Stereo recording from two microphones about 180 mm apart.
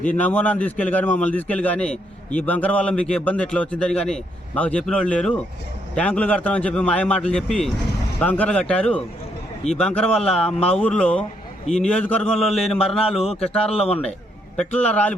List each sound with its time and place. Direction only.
0.0 s a man's voice: 10° left (ahead or behind)
13.7 s a man's voice: 35° left (ahead or behind)
14.5 s a man's voice: 5° left (ahead or behind)